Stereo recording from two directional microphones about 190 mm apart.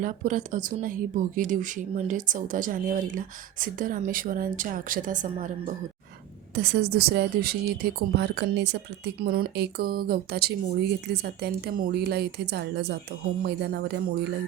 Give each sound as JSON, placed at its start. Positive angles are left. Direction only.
{"t": 0.0, "sound": "speech", "side_deg": -45}
{"t": 6.5, "sound": "a woman's voice", "side_deg": -60}